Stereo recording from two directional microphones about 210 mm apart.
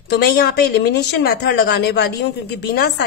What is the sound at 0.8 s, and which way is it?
Speech, 50° left (ahead or behind).